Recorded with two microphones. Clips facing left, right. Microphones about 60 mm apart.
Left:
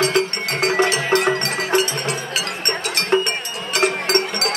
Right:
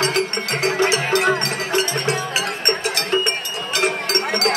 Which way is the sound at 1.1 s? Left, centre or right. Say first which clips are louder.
Even; left.